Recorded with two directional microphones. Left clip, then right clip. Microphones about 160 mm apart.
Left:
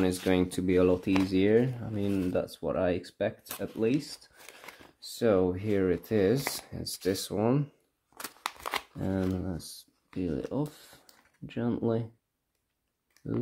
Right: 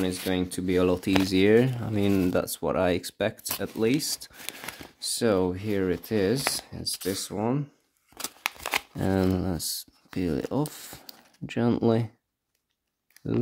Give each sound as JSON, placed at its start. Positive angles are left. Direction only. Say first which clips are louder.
{"t": 0.0, "sound": "speech", "louder": "left 1 dB", "side_deg": 0}
{"t": 0.7, "sound": "speech", "louder": "right 2 dB", "side_deg": -25}
{"t": 5.0, "sound": "speech", "louder": "right 1 dB", "side_deg": -30}
{"t": 8.5, "sound": "shuffling cards", "louder": "right 5 dB", "side_deg": -20}
{"t": 8.9, "sound": "speech", "louder": "right 6 dB", "side_deg": -45}